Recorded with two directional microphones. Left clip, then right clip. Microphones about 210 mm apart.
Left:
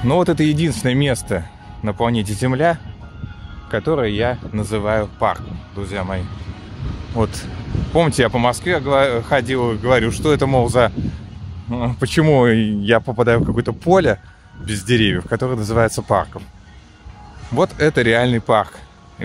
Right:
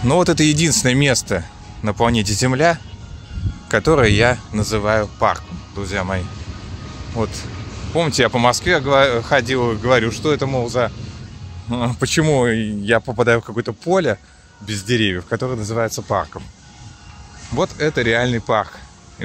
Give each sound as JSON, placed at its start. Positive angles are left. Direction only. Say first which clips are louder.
{"t": 0.0, "sound": "speech", "louder": "right 1 dB", "side_deg": 5}
{"t": 7.2, "sound": "speech", "louder": "left 2 dB", "side_deg": 15}
{"t": 11.7, "sound": "speech", "louder": "right 1 dB", "side_deg": 0}
{"t": 17.6, "sound": "speech", "louder": "left 3 dB", "side_deg": 20}